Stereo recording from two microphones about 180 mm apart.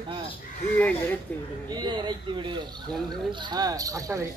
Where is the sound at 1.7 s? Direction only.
25° right (ahead or behind).